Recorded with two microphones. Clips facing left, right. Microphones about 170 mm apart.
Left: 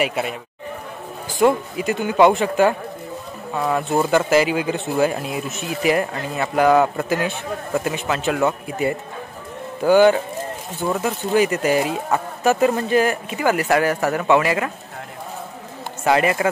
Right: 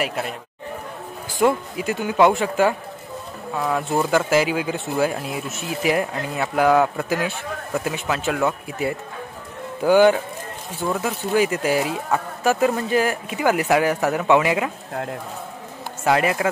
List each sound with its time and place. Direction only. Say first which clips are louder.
0.0 s speech: left 3 dB; 5° left (ahead or behind)
1.4 s speech: left 2 dB; centre (ahead or behind)
10.9 s a man's voice: left 2 dB; centre (ahead or behind)
16.0 s speech: left 2 dB; centre (ahead or behind)